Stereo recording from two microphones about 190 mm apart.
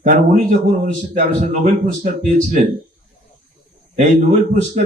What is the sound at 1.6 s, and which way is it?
Speech, 40° right (ahead or behind).